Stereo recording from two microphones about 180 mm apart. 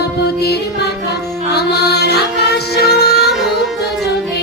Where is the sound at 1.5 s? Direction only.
65° left (ahead or behind).